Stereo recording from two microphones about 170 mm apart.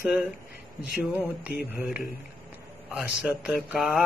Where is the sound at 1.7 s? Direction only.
5° right (ahead or behind).